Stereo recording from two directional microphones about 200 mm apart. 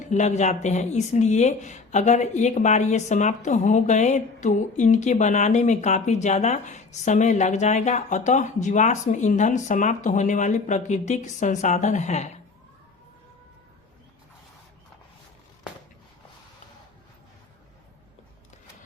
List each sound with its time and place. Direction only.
0.0 s speech: 35° left (ahead or behind)